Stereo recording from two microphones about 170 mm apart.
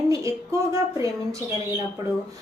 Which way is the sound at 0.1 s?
20° right (ahead or behind).